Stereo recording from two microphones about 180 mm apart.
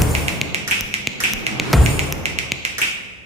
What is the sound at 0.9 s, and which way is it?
Tap, 35° right (ahead or behind).